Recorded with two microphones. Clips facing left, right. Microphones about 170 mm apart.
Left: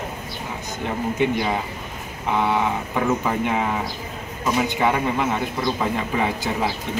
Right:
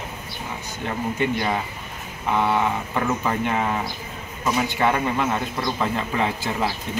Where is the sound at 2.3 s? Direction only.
10° left (ahead or behind).